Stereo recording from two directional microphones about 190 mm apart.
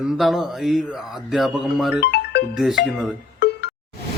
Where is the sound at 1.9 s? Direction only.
55° left (ahead or behind).